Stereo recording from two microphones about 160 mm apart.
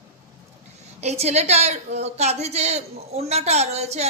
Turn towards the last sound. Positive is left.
turn(degrees=-40)  # may be behind; listen again after turning